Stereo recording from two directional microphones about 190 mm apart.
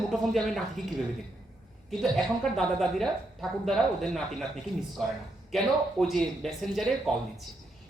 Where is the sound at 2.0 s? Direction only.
5° left (ahead or behind).